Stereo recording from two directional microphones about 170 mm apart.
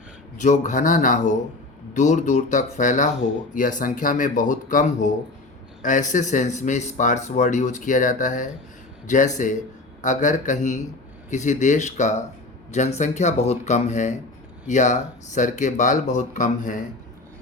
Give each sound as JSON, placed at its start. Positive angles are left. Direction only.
{"t": 0.4, "sound": "speech", "side_deg": 45}